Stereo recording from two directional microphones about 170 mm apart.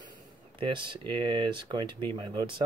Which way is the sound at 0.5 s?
30° right (ahead or behind).